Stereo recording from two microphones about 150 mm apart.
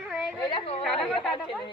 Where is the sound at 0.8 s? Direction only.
Centre (ahead or behind).